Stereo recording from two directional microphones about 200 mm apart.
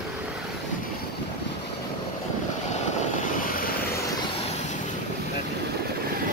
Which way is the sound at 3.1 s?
40° left (ahead or behind).